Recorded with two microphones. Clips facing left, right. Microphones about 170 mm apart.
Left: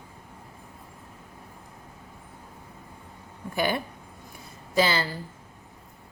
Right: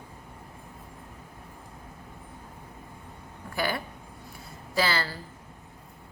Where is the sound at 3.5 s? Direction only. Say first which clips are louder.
Left 3 dB; 20° left (ahead or behind).